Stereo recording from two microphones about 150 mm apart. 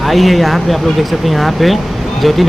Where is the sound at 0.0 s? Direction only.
Centre (ahead or behind).